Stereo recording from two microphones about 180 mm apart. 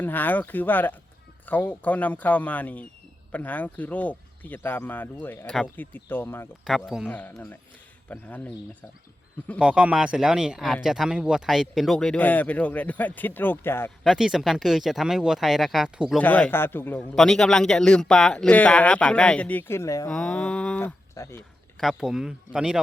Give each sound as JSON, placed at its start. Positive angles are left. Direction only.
{"t": 0.0, "sound": "a man's voice", "side_deg": 10}
{"t": 6.7, "sound": "speech", "side_deg": 0}
{"t": 7.1, "sound": "a man's voice", "side_deg": 10}
{"t": 9.6, "sound": "speech", "side_deg": -5}
{"t": 14.0, "sound": "speech", "side_deg": 0}
{"t": 16.2, "sound": "a man's voice", "side_deg": 10}
{"t": 20.1, "sound": "a man's voice", "side_deg": 5}
{"t": 21.8, "sound": "speech", "side_deg": 0}